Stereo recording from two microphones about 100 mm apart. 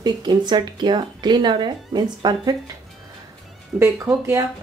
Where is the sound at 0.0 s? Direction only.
45° right (ahead or behind).